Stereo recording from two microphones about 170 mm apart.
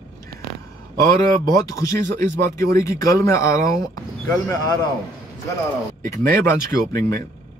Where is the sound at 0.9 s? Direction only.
20° left (ahead or behind).